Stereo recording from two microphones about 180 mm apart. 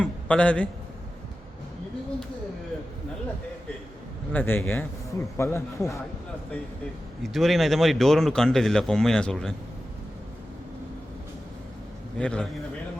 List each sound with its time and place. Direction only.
0.0 s a man's voice: 5° left (ahead or behind)
4.3 s a man's voice: 10° left (ahead or behind)
7.2 s speech: centre (ahead or behind)
12.1 s speech: 5° left (ahead or behind)